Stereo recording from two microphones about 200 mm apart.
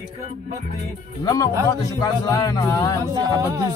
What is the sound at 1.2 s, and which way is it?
Speech, 15° left (ahead or behind).